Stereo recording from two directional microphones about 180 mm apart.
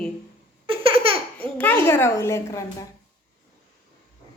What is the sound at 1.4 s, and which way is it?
A child's voice, 10° left (ahead or behind).